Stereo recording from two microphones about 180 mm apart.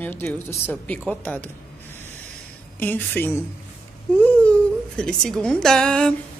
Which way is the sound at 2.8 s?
10° left (ahead or behind).